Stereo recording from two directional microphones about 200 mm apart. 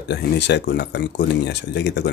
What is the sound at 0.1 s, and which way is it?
Speech, 55° left (ahead or behind).